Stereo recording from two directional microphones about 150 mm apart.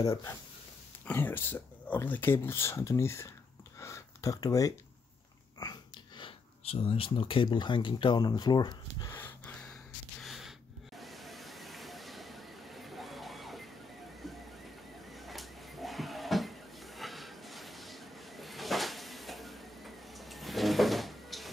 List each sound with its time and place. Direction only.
0.0 s speech: 20° left (ahead or behind)
9.1 s gasp: 15° left (ahead or behind)
10.2 s gasp: centre (ahead or behind)
11.0 s a sound: centre (ahead or behind)
14.2 s music: centre (ahead or behind)
15.1 s a sound: centre (ahead or behind)